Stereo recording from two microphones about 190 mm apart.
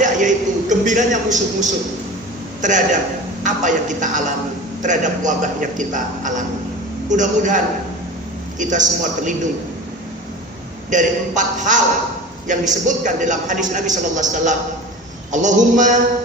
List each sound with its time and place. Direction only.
0.0 s a sound: 40° right (ahead or behind)
2.6 s a man's voice: 40° right (ahead or behind)
10.9 s a man's voice: 40° right (ahead or behind)